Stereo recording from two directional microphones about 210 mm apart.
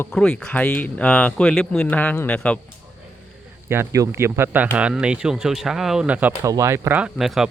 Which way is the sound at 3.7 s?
15° right (ahead or behind).